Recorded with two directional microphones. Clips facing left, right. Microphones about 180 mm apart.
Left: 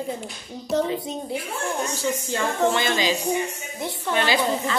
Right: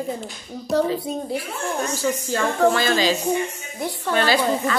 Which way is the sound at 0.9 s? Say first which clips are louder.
Right 3 dB; 20° left (ahead or behind).